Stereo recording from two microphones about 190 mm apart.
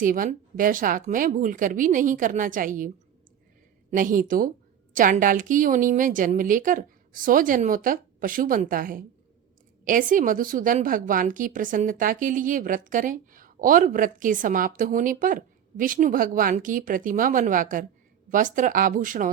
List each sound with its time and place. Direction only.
0.0 s a woman's voice: 45° right (ahead or behind)
3.9 s a woman's voice: 45° right (ahead or behind)